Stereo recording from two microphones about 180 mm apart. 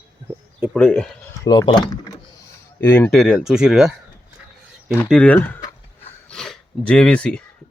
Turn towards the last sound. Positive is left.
turn(degrees=5)  # may be behind; listen again after turning